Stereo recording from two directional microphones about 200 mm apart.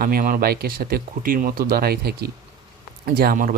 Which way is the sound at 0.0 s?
45° right (ahead or behind).